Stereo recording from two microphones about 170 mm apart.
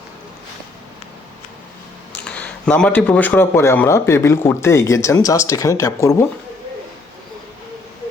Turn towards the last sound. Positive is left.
turn(degrees=20)  # may be behind; listen again after turning